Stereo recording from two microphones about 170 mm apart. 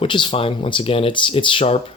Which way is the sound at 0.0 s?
30° left (ahead or behind).